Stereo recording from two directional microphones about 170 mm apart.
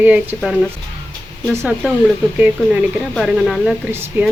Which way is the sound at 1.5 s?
15° right (ahead or behind).